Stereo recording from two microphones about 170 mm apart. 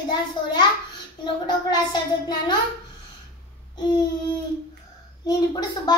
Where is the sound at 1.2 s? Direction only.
25° left (ahead or behind).